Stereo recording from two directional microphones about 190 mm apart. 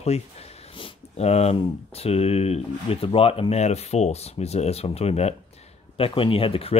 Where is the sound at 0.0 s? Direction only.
35° left (ahead or behind).